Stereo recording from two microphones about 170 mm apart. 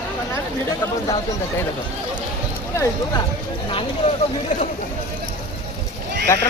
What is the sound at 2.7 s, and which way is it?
Speech, 20° left (ahead or behind).